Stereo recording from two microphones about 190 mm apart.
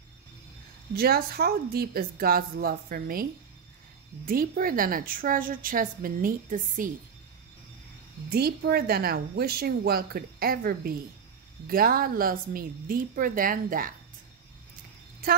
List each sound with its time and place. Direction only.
0.9 s speech: 55° right (ahead or behind)
4.3 s speech: 50° right (ahead or behind)
8.3 s speech: 55° right (ahead or behind)